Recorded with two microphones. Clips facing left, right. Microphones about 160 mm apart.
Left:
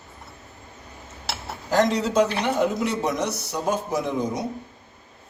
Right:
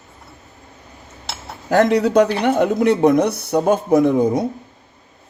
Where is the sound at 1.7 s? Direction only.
60° right (ahead or behind).